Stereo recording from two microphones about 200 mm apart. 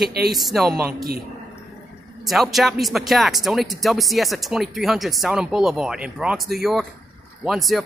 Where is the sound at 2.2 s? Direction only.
Centre (ahead or behind).